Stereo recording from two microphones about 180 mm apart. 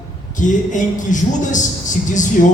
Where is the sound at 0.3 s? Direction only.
45° left (ahead or behind).